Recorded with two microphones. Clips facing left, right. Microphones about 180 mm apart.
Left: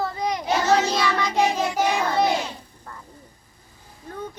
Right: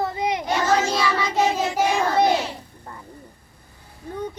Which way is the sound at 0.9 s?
5° right (ahead or behind).